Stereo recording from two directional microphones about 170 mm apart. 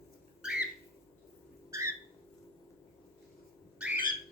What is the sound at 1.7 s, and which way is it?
Bird, 15° right (ahead or behind).